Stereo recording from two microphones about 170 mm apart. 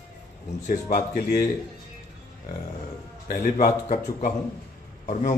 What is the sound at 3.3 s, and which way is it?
A man's voice, 45° left (ahead or behind).